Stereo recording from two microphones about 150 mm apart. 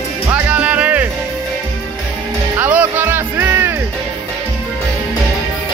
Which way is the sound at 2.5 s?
10° right (ahead or behind).